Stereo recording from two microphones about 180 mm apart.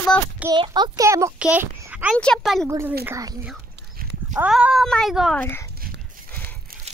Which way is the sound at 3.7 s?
70° right (ahead or behind).